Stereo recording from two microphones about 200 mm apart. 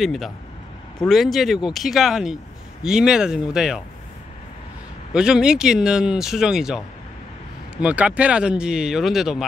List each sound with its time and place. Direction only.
0.0 s speech: centre (ahead or behind)
5.1 s speech: 5° right (ahead or behind)